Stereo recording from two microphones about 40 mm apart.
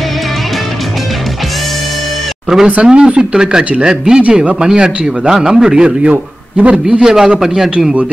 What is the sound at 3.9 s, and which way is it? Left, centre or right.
Speech, centre.